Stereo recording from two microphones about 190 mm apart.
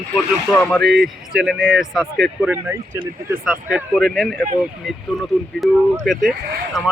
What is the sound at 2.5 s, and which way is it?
Speech, 15° right (ahead or behind).